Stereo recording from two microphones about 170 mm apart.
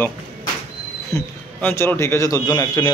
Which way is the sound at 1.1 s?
15° left (ahead or behind).